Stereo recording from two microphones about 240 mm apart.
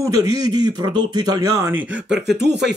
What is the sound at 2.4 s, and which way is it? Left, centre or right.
Speech, right.